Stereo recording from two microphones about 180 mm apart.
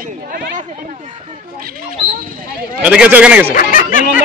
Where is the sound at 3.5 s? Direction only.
45° left (ahead or behind).